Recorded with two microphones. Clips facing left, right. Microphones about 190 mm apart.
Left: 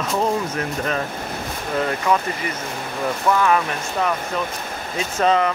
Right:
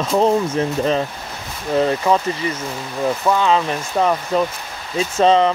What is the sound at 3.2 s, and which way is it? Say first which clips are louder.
Speech: right 1 dB; 20° right (ahead or behind).